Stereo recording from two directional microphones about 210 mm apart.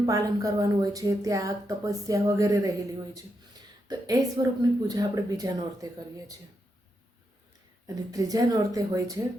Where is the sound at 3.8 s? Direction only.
15° right (ahead or behind).